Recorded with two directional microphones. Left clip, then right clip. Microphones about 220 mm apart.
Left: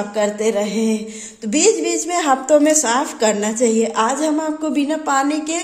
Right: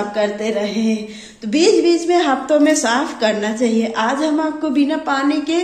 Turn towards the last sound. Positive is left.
turn(degrees=55)  # may be behind; listen again after turning